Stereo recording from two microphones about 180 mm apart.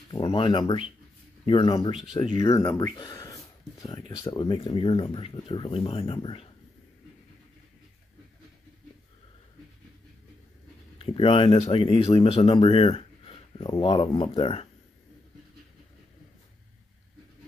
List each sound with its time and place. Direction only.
0.1 s speech: 25° left (ahead or behind)
11.0 s speech: 30° left (ahead or behind)